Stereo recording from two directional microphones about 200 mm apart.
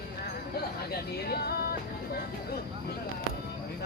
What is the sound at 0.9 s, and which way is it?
Music, 50° left (ahead or behind).